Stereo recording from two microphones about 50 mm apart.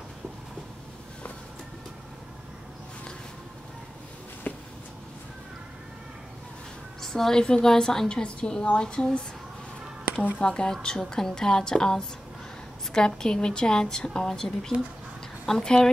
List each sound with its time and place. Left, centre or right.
4.5 s a sound: left
7.0 s a woman's voice: centre
10.4 s a woman's voice: centre